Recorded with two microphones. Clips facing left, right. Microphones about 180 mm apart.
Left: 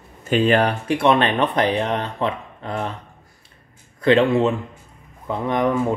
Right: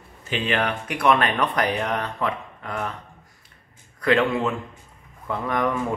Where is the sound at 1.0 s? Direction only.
25° left (ahead or behind).